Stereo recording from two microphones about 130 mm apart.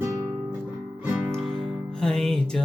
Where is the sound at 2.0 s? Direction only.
5° left (ahead or behind).